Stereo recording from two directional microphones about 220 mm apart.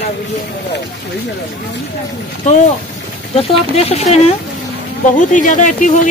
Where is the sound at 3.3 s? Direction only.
25° left (ahead or behind).